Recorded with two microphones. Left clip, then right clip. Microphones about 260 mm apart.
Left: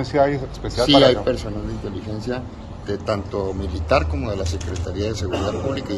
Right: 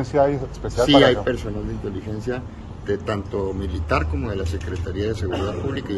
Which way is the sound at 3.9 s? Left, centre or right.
Centre.